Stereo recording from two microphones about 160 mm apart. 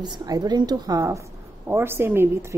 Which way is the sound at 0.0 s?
25° right (ahead or behind).